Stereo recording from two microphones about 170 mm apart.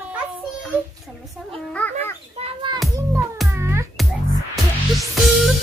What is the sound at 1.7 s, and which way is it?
Speech, 10° left (ahead or behind).